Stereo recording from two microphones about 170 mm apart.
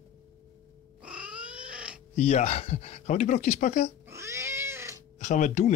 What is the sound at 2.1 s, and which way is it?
Speech, 40° left (ahead or behind).